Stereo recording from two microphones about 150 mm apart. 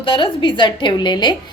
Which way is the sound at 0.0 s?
35° left (ahead or behind).